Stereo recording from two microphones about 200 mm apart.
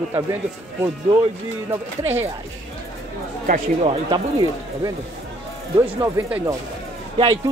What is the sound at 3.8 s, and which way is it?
Speech, 25° right (ahead or behind).